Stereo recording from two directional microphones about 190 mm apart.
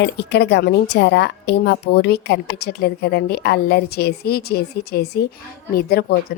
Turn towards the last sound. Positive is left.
turn(degrees=55)  # may be behind; listen again after turning